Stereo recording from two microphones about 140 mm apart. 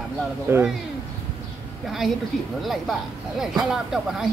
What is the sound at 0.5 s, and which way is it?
Speech, 15° right (ahead or behind).